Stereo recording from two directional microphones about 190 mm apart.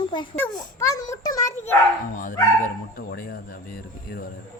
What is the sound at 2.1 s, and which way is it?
Speech, 45° left (ahead or behind).